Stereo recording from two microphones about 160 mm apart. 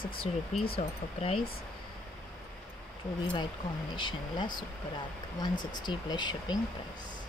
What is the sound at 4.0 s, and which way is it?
Speech, 30° left (ahead or behind).